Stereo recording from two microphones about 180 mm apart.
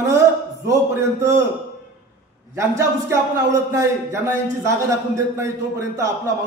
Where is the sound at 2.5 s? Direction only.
15° right (ahead or behind).